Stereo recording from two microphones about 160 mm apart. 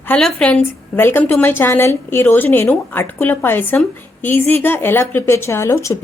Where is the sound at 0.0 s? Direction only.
5° left (ahead or behind).